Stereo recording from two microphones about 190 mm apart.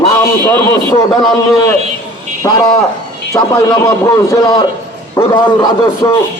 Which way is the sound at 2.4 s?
20° left (ahead or behind).